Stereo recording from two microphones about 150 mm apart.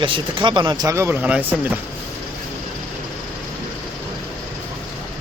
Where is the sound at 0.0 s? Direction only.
35° right (ahead or behind); by 1.8 s 10° right (ahead or behind).